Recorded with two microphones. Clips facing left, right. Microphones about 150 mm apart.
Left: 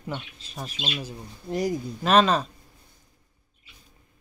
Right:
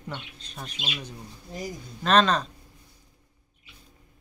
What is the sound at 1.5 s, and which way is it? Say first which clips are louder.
Speech: left 10 dB; 75° left (ahead or behind).